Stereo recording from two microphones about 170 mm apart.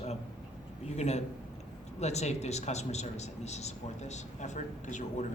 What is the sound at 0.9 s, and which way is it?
A man's voice, 40° left (ahead or behind).